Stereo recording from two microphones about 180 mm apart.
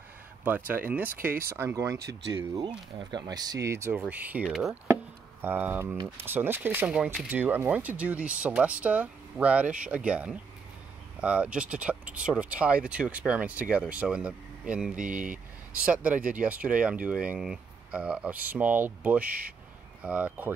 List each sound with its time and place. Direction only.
0.4 s speech: 10° right (ahead or behind)
3.0 s speech: 25° right (ahead or behind)